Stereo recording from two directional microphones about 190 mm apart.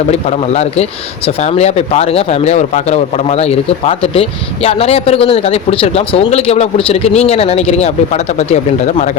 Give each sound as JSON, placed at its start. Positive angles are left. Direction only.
{"t": 0.1, "sound": "speech", "side_deg": 35}